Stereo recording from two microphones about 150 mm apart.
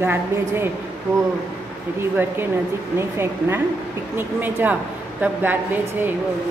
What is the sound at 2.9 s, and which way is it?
A woman's voice, 15° right (ahead or behind).